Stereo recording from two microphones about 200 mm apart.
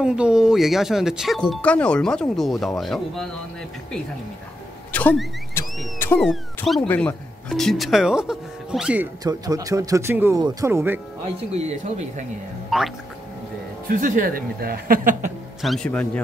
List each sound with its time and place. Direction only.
0.0 s speech: 5° right (ahead or behind)
4.9 s a sound: 5° left (ahead or behind)
6.2 s speech: centre (ahead or behind)
9.2 s speech: 15° right (ahead or behind)
11.5 s speech: 35° right (ahead or behind)
12.6 s music: centre (ahead or behind)
13.8 s speech: 40° right (ahead or behind)
15.6 s speech: centre (ahead or behind)